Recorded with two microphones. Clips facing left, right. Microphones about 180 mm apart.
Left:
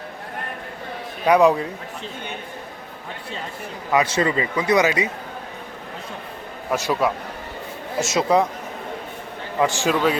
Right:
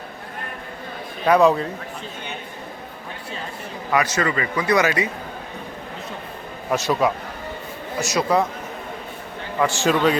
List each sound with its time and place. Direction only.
1.2 s a man's voice: 15° left (ahead or behind)
3.9 s speech: 30° left (ahead or behind)
6.7 s a man's voice: 10° left (ahead or behind)
8.0 s speech: 20° left (ahead or behind)
9.6 s a man's voice: 15° left (ahead or behind)